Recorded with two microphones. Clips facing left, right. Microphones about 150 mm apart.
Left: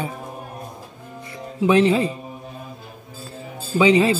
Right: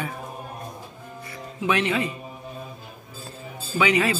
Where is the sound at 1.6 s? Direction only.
30° left (ahead or behind).